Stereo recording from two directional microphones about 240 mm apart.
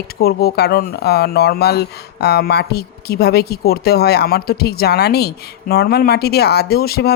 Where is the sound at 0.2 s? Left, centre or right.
Left.